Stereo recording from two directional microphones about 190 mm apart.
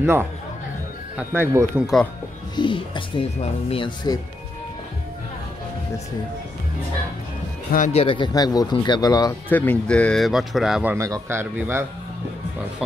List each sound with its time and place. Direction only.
0.0 s speech: 10° right (ahead or behind)
2.5 s speech: 25° left (ahead or behind)
7.7 s speech: 35° left (ahead or behind); by 9.3 s 20° left (ahead or behind)
9.5 s speech: 10° left (ahead or behind); by 11.8 s 10° right (ahead or behind)